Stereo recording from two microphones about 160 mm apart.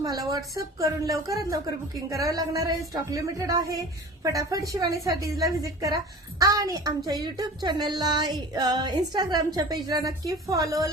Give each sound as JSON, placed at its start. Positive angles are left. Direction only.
{"t": 0.0, "sound": "speech", "side_deg": -20}